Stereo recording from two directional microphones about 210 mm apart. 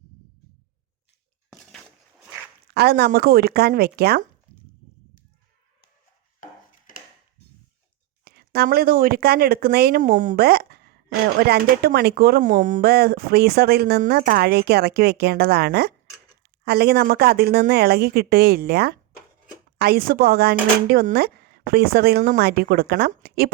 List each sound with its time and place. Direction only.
2.7 s speech: 50° right (ahead or behind)
6.4 s chopping: 40° left (ahead or behind)
8.2 s speech: 50° right (ahead or behind)